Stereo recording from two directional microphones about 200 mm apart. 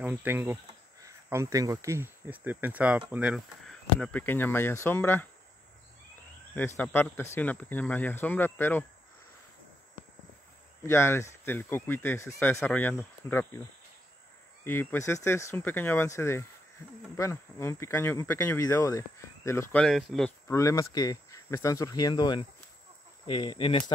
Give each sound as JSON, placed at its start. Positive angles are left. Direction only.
{"t": 0.0, "sound": "speech", "side_deg": -10}
{"t": 4.0, "sound": "speech", "side_deg": 10}
{"t": 6.8, "sound": "speech", "side_deg": 10}
{"t": 10.8, "sound": "speech", "side_deg": 15}
{"t": 14.6, "sound": "speech", "side_deg": 10}